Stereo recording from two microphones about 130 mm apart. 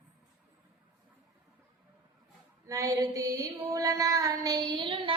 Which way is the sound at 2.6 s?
25° right (ahead or behind).